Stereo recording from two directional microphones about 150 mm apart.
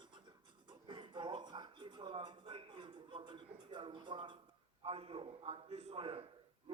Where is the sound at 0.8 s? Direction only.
30° right (ahead or behind).